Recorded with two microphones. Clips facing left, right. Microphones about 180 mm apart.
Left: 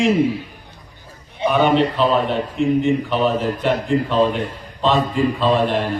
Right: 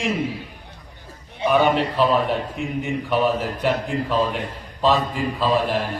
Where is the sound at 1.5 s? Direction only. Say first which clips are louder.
Left 2 dB; centre (ahead or behind).